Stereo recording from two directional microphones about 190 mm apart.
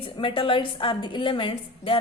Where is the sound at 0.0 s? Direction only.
25° left (ahead or behind).